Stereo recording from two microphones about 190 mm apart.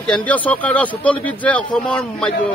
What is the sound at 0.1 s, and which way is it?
Speech, 5° left (ahead or behind).